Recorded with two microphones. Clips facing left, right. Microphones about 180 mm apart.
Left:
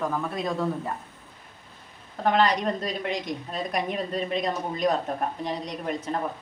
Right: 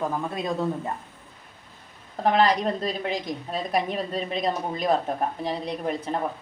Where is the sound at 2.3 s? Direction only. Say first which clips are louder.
Right 1 dB; 30° right (ahead or behind).